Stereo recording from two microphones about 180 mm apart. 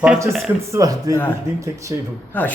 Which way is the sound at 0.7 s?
15° right (ahead or behind).